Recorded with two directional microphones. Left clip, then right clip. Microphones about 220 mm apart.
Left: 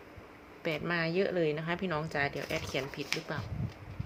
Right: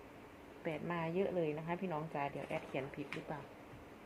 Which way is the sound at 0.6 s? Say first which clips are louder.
Left 8 dB; 30° left (ahead or behind).